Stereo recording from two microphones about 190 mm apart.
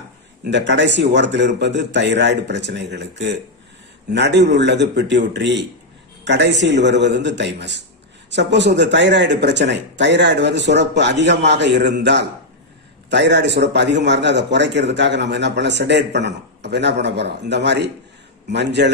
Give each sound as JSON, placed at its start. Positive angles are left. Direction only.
{"t": 0.4, "sound": "a man's voice", "side_deg": -65}